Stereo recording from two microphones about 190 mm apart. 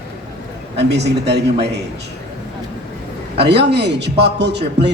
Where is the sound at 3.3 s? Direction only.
60° right (ahead or behind).